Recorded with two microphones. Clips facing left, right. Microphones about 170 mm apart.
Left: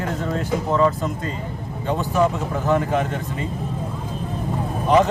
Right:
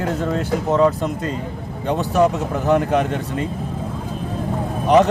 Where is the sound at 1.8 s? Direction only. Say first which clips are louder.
Right 3 dB; 75° right (ahead or behind).